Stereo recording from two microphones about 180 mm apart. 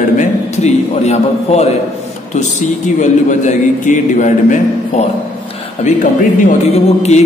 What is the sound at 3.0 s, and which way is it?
A man's voice, 40° left (ahead or behind).